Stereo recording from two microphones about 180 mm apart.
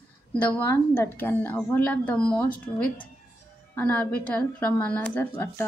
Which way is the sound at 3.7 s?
10° left (ahead or behind).